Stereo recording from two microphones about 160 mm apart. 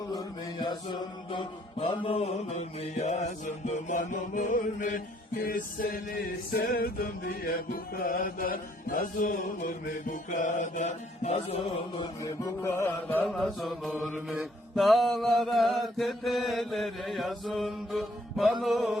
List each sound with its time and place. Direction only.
0.1 s mantra: 25° left (ahead or behind); by 5.0 s 55° left (ahead or behind)
5.5 s music: 60° left (ahead or behind); by 12.0 s 40° left (ahead or behind)
12.2 s music: 20° left (ahead or behind)
13.2 s mantra: centre (ahead or behind)